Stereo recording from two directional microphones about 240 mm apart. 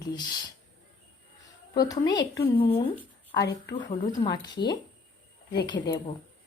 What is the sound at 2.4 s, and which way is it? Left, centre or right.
Speech, left.